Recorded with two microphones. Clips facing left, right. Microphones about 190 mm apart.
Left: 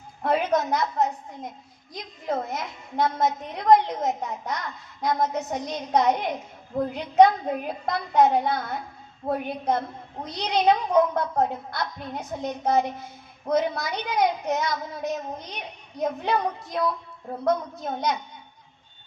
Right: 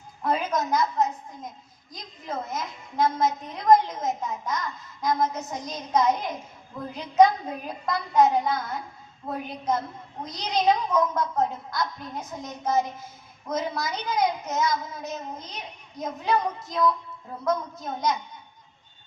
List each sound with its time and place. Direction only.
0.2 s a woman's voice: 65° left (ahead or behind)